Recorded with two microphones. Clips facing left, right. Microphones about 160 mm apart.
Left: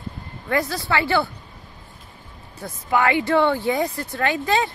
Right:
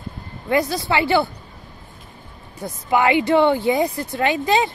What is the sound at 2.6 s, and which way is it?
Speech, 20° right (ahead or behind).